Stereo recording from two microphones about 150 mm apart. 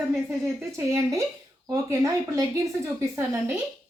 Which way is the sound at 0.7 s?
20° right (ahead or behind).